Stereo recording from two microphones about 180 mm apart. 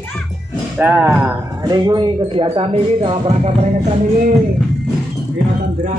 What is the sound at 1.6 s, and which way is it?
Speech, 25° right (ahead or behind).